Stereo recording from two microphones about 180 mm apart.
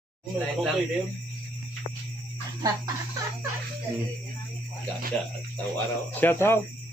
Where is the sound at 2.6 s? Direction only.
20° right (ahead or behind).